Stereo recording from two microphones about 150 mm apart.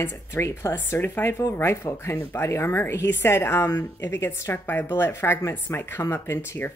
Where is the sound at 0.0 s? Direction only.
15° left (ahead or behind).